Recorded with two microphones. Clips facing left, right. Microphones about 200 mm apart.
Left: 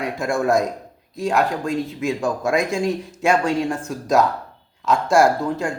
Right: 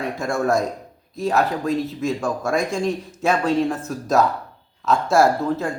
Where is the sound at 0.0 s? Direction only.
Centre (ahead or behind).